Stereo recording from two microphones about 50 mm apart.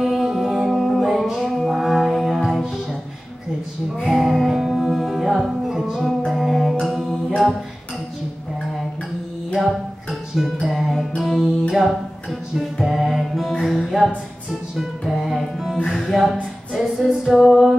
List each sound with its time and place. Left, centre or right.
0.0 s music: centre
4.0 s music: centre
7.1 s mantra: centre
9.5 s music: centre
16.1 s a sound: centre
16.8 s music: centre